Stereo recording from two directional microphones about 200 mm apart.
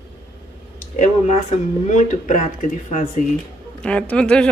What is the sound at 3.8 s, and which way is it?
Speech, 5° left (ahead or behind).